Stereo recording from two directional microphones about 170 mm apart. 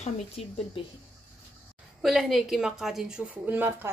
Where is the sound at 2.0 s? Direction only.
Centre (ahead or behind).